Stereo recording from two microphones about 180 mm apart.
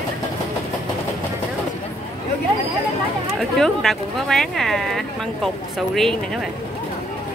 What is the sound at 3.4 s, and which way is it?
Speech, centre (ahead or behind).